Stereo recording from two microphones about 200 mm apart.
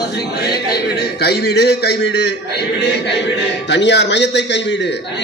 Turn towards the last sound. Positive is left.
turn(degrees=60)  # may be behind; listen again after turning